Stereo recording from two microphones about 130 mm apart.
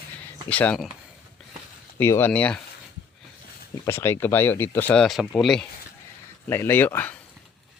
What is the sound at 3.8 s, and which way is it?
Speech, 20° left (ahead or behind).